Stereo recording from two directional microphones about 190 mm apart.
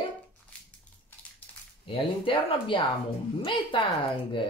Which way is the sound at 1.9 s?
30° left (ahead or behind).